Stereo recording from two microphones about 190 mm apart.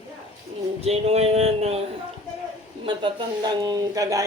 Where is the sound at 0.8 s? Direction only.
35° right (ahead or behind).